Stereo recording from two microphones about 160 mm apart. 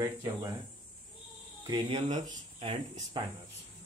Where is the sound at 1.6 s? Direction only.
30° right (ahead or behind).